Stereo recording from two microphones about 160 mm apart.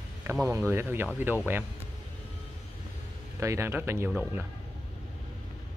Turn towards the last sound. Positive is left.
turn(degrees=-10)  # may be behind; listen again after turning